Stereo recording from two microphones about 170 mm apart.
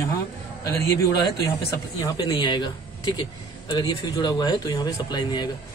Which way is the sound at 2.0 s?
25° left (ahead or behind).